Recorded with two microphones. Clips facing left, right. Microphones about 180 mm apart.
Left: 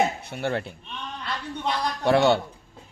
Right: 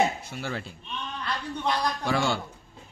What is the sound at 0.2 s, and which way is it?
Speech, 60° left (ahead or behind).